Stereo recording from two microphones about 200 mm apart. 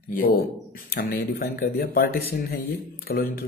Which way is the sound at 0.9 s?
45° left (ahead or behind).